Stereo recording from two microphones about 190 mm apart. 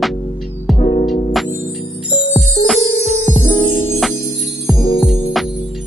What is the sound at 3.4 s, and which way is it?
Music, 25° left (ahead or behind).